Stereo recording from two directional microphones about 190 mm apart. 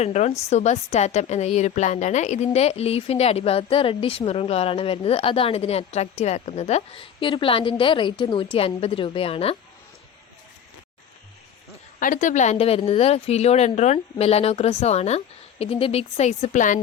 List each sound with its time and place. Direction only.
0.0 s a woman's voice: 35° left (ahead or behind)
11.9 s a woman's voice: 45° left (ahead or behind)